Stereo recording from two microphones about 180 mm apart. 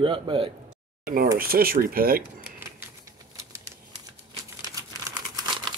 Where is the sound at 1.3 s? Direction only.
55° right (ahead or behind).